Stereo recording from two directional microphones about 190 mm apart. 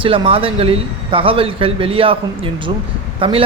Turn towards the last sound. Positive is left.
turn(degrees=-25)  # may be behind; listen again after turning